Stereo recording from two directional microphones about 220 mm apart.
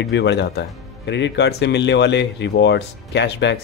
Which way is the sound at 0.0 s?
50° left (ahead or behind).